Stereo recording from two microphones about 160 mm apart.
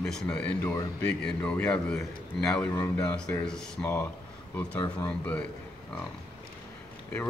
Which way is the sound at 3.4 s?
5° left (ahead or behind).